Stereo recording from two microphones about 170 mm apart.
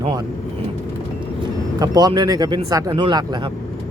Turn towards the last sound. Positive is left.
turn(degrees=-25)  # may be behind; listen again after turning